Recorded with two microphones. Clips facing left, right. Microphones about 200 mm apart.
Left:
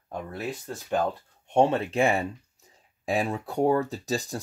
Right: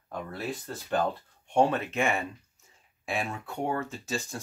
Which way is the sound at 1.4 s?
25° left (ahead or behind).